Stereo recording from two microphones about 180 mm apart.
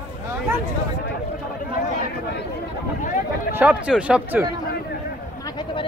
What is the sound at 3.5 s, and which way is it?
Speech, 5° right (ahead or behind).